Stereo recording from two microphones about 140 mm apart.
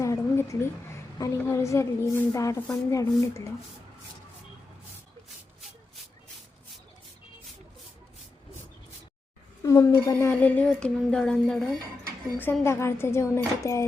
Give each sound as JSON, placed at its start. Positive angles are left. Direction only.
{"t": 0.0, "sound": "a woman's voice", "side_deg": 20}
{"t": 9.6, "sound": "speech", "side_deg": 20}
{"t": 12.6, "sound": "speech", "side_deg": 20}